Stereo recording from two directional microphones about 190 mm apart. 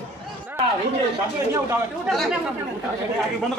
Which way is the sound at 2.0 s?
Centre (ahead or behind).